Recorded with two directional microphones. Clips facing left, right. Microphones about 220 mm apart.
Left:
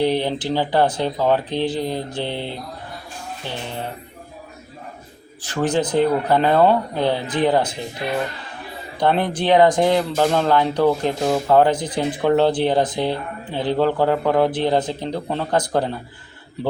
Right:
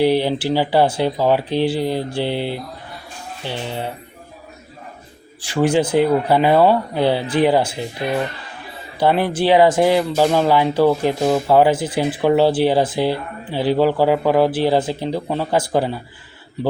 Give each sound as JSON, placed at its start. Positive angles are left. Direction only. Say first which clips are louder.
{"t": 0.0, "sound": "speech", "louder": "right 3 dB", "side_deg": -10}
{"t": 5.4, "sound": "speech", "louder": "right 4 dB", "side_deg": -10}
{"t": 9.0, "sound": "speech", "louder": "right 3 dB", "side_deg": -5}